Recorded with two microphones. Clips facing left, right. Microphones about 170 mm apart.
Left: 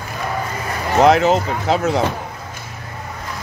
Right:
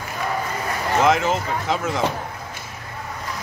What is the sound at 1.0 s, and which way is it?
Speech, 70° left (ahead or behind).